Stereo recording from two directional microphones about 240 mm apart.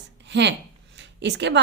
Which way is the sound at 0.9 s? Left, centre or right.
Right.